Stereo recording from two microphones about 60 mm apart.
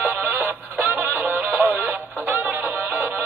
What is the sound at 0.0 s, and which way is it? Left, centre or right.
Music, right.